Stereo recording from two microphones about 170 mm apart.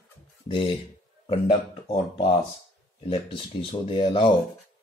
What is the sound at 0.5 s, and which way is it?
Speech, 30° left (ahead or behind).